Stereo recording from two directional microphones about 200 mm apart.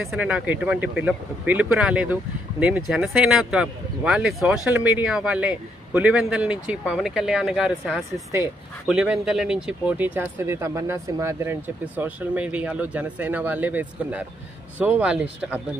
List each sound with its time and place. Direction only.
0.0 s a man's voice: 5° right (ahead or behind)